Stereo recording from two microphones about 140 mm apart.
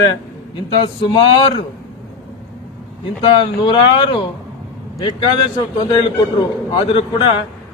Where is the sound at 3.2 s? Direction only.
35° left (ahead or behind).